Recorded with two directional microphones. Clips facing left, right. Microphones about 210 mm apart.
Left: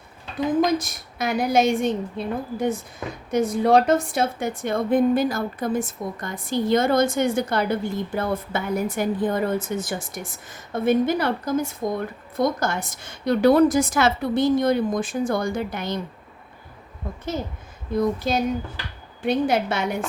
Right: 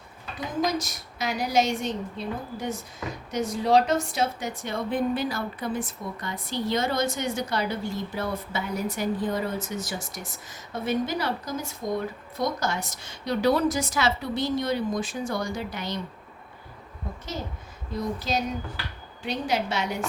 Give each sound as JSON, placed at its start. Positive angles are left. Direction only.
{"t": 0.6, "sound": "a woman's voice", "side_deg": 55}
{"t": 17.9, "sound": "a woman's voice", "side_deg": 55}